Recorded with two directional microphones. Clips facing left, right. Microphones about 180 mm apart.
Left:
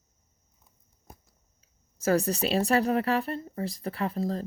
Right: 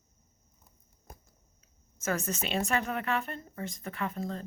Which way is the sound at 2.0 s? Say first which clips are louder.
Left 8 dB; 35° left (ahead or behind).